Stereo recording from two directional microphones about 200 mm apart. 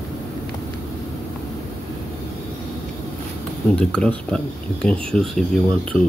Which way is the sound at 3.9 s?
5° left (ahead or behind).